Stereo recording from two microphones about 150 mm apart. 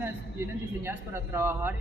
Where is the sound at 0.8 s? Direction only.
15° right (ahead or behind).